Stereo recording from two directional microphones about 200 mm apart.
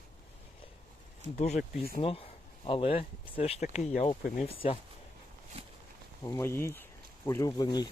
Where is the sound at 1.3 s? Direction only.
35° left (ahead or behind).